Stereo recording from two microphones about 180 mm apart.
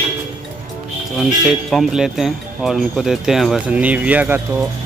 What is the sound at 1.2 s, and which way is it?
Speech, centre (ahead or behind).